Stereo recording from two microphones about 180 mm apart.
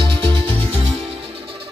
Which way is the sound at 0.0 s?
25° right (ahead or behind).